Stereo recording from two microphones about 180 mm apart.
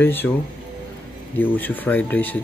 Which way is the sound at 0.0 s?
10° left (ahead or behind).